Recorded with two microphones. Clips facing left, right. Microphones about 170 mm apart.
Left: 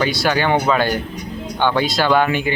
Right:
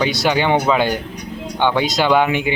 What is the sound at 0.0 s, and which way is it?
A man's voice, 20° right (ahead or behind).